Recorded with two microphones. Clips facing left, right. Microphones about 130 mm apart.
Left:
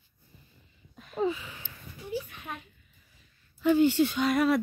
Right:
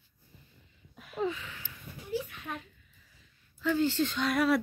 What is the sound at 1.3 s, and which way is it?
Speech, 15° left (ahead or behind).